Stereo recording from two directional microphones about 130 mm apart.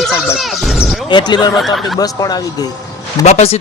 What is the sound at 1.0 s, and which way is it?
Speech, 35° left (ahead or behind).